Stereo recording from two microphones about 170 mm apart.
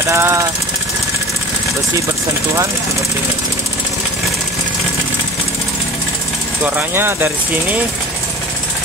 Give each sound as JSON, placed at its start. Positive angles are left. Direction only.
{"t": 0.1, "sound": "speech", "side_deg": -15}
{"t": 6.6, "sound": "speech", "side_deg": -15}